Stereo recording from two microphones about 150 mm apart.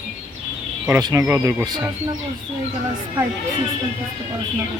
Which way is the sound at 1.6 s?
25° right (ahead or behind).